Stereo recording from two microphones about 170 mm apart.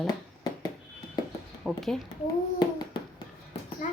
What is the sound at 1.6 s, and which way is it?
Speech, centre (ahead or behind).